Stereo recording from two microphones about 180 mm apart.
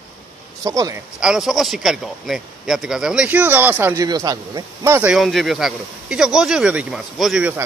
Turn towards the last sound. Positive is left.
turn(degrees=-5)  # may be behind; listen again after turning